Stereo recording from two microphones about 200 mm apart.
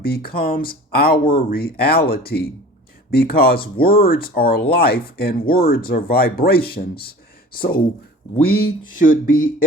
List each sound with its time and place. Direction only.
0.0 s speech: 50° left (ahead or behind)